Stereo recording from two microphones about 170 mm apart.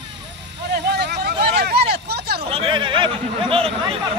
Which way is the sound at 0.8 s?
75° right (ahead or behind).